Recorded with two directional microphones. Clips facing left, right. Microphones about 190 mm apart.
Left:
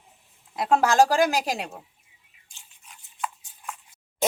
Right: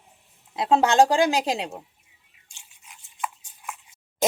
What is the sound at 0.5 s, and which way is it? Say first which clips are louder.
Speech: right 1 dB; 25° right (ahead or behind).